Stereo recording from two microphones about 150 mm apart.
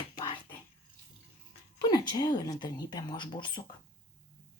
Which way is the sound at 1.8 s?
25° left (ahead or behind).